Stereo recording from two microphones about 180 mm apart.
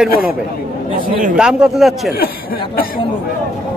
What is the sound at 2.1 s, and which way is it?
Speech, 55° left (ahead or behind).